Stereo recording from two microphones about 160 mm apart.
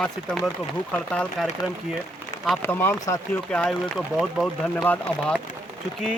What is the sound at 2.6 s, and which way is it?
Speech, 15° left (ahead or behind).